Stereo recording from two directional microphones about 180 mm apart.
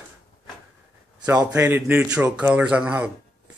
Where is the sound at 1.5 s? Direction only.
10° right (ahead or behind).